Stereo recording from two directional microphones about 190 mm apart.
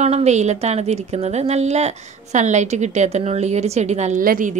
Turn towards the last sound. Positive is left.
turn(degrees=-45)  # may be behind; listen again after turning